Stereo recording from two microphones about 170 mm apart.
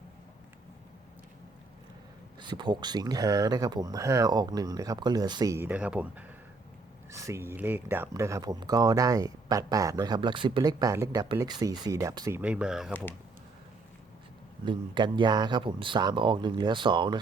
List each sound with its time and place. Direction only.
2.4 s speech: 25° right (ahead or behind)
12.4 s speech: 5° right (ahead or behind)
12.9 s speech: 10° left (ahead or behind)
14.6 s speech: 25° right (ahead or behind)